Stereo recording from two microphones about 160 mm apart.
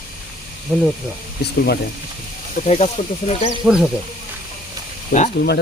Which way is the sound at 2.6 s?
45° left (ahead or behind).